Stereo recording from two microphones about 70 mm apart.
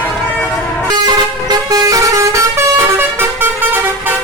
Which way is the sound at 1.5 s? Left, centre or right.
Right.